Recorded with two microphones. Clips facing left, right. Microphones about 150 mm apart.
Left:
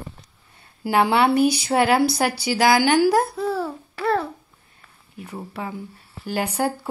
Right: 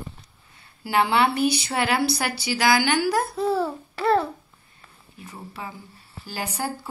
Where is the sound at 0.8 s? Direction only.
55° left (ahead or behind).